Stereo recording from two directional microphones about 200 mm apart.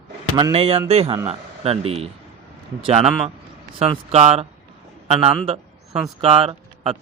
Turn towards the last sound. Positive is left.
turn(degrees=-25)  # may be behind; listen again after turning